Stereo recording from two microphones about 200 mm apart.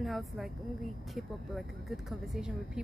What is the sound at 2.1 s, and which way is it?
Speech, 5° right (ahead or behind).